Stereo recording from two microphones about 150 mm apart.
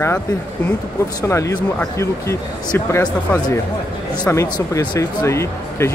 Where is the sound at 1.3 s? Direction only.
20° left (ahead or behind).